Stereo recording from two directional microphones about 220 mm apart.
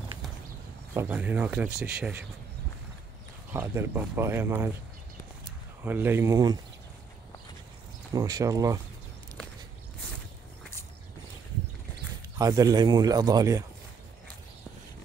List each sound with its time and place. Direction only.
0.9 s speech: 5° right (ahead or behind)
3.5 s speech: 10° right (ahead or behind)
5.9 s speech: 10° right (ahead or behind)
8.1 s speech: 15° right (ahead or behind)
12.4 s speech: 15° right (ahead or behind)